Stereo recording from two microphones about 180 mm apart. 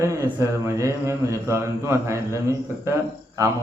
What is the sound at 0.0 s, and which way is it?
Speech, 15° right (ahead or behind).